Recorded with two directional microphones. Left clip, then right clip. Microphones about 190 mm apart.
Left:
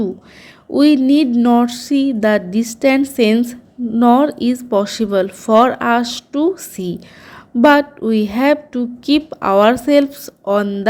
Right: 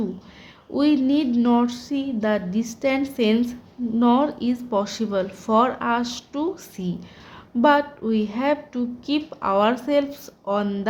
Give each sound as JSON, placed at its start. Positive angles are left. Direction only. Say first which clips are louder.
{"t": 0.7, "sound": "a woman's voice", "louder": "left 8 dB", "side_deg": 30}
{"t": 1.3, "sound": "a sound", "louder": "left 7 dB", "side_deg": 20}
{"t": 7.6, "sound": "a woman's voice", "louder": "left 7 dB", "side_deg": 30}